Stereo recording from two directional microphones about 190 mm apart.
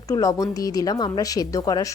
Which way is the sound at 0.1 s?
20° left (ahead or behind).